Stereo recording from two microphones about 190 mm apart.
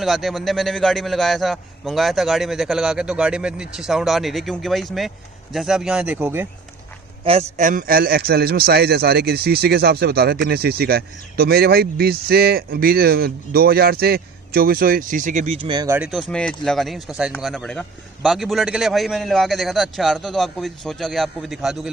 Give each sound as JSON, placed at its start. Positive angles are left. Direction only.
{"t": 0.0, "sound": "a man's voice", "side_deg": 0}
{"t": 7.2, "sound": "a man's voice", "side_deg": -35}
{"t": 16.0, "sound": "a man's voice", "side_deg": 0}